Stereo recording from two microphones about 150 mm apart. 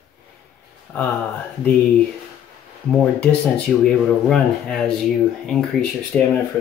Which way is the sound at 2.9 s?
5° left (ahead or behind).